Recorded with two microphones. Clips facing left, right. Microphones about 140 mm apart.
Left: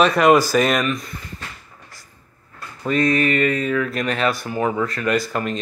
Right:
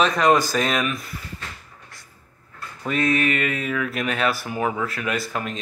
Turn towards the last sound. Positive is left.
turn(degrees=0)  # may be behind; listen again after turning